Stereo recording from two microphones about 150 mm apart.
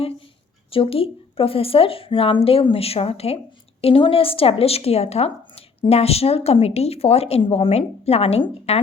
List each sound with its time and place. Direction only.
0.7 s speech: 40° left (ahead or behind)